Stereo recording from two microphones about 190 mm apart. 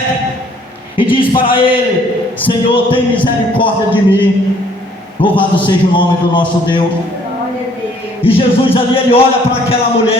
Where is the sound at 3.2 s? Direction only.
25° left (ahead or behind).